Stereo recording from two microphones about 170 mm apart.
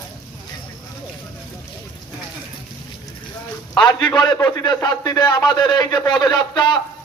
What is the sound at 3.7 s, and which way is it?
A man's voice, 30° left (ahead or behind).